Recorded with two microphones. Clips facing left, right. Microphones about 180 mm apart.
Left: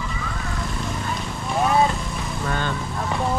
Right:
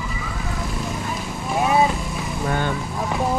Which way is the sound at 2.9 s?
5° right (ahead or behind).